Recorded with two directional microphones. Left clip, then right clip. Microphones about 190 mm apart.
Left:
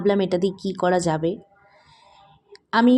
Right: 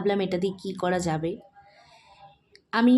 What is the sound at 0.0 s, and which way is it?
Speech, 15° left (ahead or behind).